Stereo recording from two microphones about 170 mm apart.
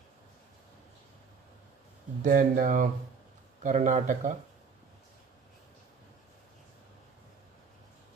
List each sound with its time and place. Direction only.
2.2 s speech: 50° right (ahead or behind)